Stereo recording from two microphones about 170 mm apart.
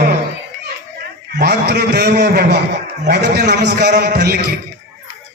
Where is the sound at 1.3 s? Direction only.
70° right (ahead or behind).